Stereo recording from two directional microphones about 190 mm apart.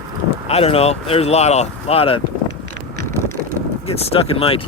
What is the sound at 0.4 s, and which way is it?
Speech, 30° left (ahead or behind).